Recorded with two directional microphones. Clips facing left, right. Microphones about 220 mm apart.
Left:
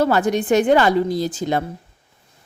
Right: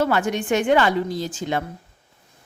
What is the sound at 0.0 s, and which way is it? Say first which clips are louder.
Speech: left 4 dB; 35° left (ahead or behind).